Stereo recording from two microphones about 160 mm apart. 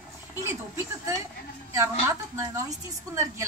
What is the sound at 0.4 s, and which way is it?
Speech, 15° right (ahead or behind).